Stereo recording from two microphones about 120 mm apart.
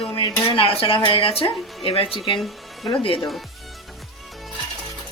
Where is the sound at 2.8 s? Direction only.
45° left (ahead or behind).